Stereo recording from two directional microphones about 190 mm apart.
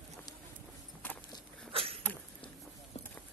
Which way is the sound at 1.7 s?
30° right (ahead or behind).